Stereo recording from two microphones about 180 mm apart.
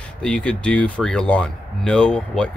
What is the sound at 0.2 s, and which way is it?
Speech, 5° left (ahead or behind).